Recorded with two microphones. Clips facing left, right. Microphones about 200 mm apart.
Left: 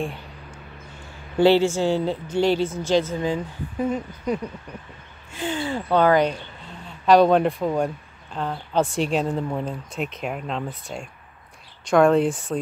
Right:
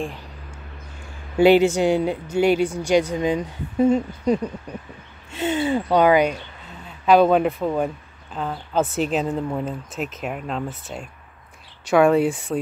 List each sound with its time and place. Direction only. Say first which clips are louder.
1.3 s a woman's voice: right 2 dB; 15° right (ahead or behind)